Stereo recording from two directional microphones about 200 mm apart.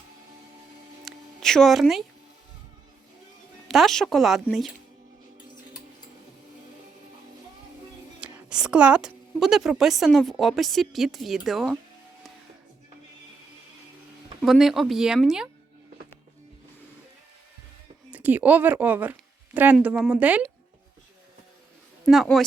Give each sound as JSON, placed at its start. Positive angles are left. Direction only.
{"t": 1.0, "sound": "music", "side_deg": 0}
{"t": 3.7, "sound": "a woman's voice", "side_deg": 0}
{"t": 8.2, "sound": "a woman's voice", "side_deg": -5}
{"t": 14.4, "sound": "a woman's voice", "side_deg": 0}
{"t": 18.1, "sound": "speech", "side_deg": -10}
{"t": 22.0, "sound": "speech", "side_deg": 0}